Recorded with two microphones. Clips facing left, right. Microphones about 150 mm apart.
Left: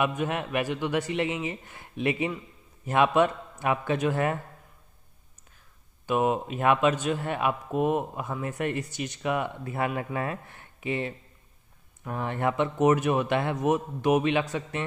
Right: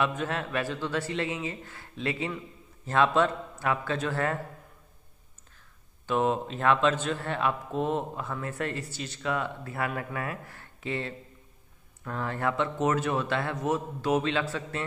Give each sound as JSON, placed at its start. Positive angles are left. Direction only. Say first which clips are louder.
{"t": 0.0, "sound": "a man's voice", "louder": "left 2 dB", "side_deg": 15}
{"t": 6.0, "sound": "a man's voice", "louder": "left 1 dB", "side_deg": 10}